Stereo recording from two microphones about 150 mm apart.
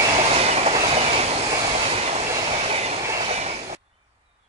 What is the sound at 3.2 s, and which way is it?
Train, 45° right (ahead or behind).